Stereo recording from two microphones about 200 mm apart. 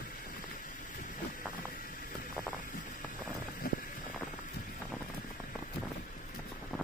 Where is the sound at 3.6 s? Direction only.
50° left (ahead or behind).